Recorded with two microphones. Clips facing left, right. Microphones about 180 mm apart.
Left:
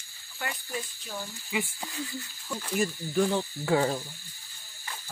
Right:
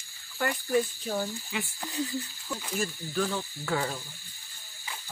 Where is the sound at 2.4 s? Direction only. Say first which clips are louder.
Left 2 dB; centre (ahead or behind).